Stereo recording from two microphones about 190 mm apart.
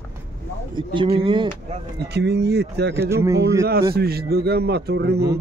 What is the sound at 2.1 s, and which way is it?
Speech, 60° right (ahead or behind).